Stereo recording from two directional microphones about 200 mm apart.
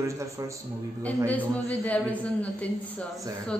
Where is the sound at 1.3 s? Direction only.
5° left (ahead or behind).